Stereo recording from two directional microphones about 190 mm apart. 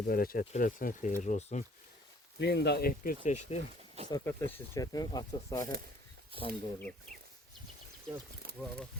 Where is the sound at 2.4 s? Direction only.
60° left (ahead or behind); by 3.6 s 40° left (ahead or behind).